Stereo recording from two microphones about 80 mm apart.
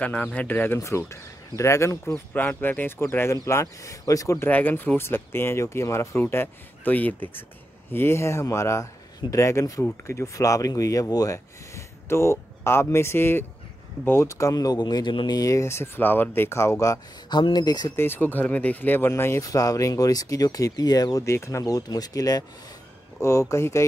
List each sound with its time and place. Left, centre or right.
0.0 s speech: centre
0.7 s speech: left
2.3 s speech: left
3.3 s speech: left
4.5 s speech: left
15.4 s speech: left
17.3 s speech: left
17.9 s speech: left
19.4 s speech: left
23.2 s speech: left